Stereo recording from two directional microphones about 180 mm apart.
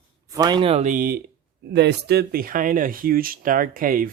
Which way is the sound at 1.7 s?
70° right (ahead or behind).